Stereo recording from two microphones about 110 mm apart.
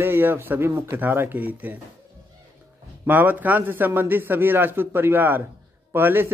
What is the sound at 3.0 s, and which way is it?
A man's voice, 15° right (ahead or behind).